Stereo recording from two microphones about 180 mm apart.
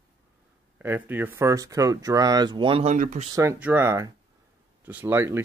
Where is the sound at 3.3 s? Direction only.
15° right (ahead or behind).